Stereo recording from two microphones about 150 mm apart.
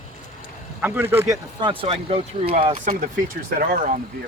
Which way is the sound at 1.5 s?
35° right (ahead or behind).